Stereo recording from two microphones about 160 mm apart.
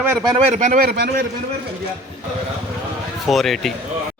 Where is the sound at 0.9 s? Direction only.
85° right.